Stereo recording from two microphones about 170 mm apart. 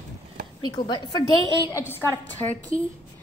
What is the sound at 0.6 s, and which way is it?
Speech, 25° left (ahead or behind).